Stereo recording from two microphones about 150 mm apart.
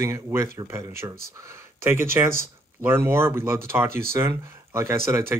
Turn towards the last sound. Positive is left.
turn(degrees=-15)  # may be behind; listen again after turning